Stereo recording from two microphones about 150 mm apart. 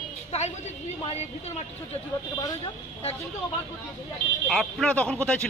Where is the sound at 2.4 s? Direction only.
35° left (ahead or behind).